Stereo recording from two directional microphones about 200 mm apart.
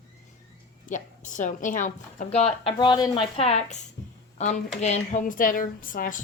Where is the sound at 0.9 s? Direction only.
40° left (ahead or behind).